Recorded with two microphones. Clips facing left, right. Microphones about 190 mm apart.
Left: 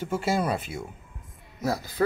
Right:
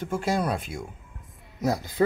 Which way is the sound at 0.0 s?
5° left (ahead or behind).